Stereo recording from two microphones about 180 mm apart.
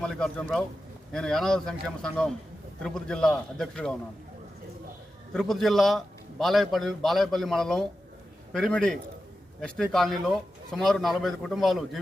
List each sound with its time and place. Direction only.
0.0 s a man's voice: 5° left (ahead or behind)
5.3 s speech: centre (ahead or behind)